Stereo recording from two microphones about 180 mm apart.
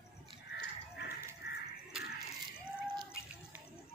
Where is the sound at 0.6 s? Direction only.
60° left (ahead or behind).